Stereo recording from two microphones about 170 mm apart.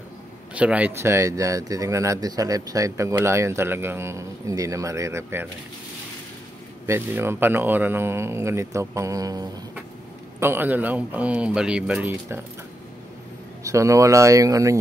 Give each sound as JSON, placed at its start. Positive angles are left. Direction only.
{"t": 0.6, "sound": "speech", "side_deg": -10}
{"t": 6.9, "sound": "speech", "side_deg": -15}
{"t": 13.7, "sound": "speech", "side_deg": -20}